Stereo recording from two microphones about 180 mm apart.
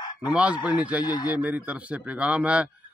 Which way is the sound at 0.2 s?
5° right (ahead or behind).